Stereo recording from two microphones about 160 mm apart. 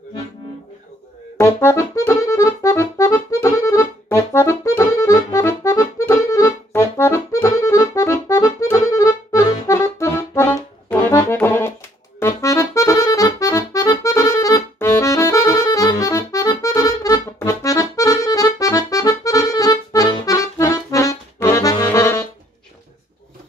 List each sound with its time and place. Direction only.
1.4 s accordion: 15° left (ahead or behind)